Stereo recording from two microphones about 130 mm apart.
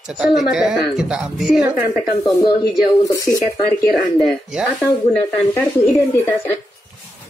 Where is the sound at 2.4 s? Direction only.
30° left (ahead or behind).